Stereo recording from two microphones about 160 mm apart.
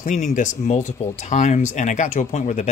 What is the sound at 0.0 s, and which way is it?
Speech, 50° left (ahead or behind).